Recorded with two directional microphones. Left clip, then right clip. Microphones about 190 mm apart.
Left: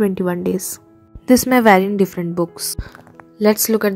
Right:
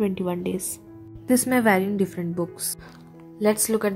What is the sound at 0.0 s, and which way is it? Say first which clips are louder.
A woman's voice: left 7 dB; 30° left (ahead or behind).